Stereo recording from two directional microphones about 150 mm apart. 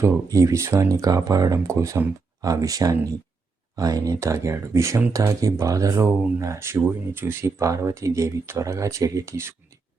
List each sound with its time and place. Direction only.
0.0 s speech: 20° right (ahead or behind)